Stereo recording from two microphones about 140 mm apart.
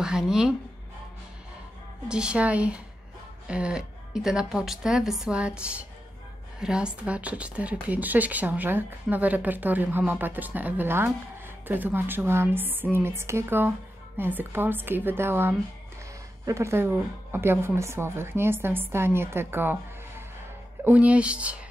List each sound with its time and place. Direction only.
0.0 s speech: 5° right (ahead or behind)
2.0 s speech: 5° right (ahead or behind)